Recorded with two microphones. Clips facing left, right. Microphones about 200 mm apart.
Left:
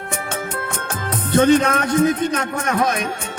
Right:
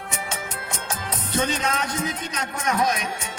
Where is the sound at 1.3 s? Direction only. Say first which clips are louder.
Left 11 dB; 60° left (ahead or behind).